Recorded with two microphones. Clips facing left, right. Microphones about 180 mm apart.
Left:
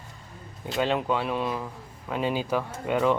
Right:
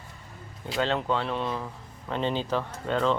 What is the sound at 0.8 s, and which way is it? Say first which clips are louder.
Speech: left 1 dB; 15° left (ahead or behind).